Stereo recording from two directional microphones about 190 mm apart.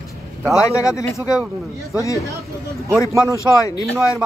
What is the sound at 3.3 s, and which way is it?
Speech, 20° left (ahead or behind).